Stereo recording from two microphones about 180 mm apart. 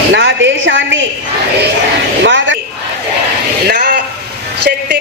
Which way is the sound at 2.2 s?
85° right.